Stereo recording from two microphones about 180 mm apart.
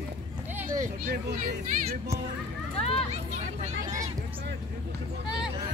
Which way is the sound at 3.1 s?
40° right (ahead or behind).